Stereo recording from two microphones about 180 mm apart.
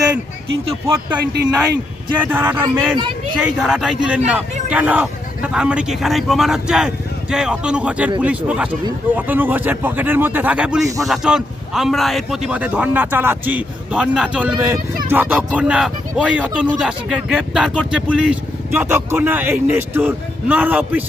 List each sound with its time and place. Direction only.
1.2 s speech: 65° right (ahead or behind)
2.1 s speech: 10° right (ahead or behind)